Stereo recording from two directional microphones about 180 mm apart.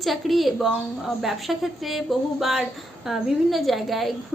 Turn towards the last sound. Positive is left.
turn(degrees=0)  # may be behind; listen again after turning